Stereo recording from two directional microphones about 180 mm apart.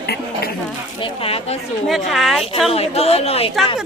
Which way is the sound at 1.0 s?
30° left (ahead or behind).